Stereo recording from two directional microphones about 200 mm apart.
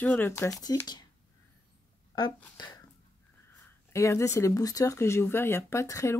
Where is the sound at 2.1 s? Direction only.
20° left (ahead or behind).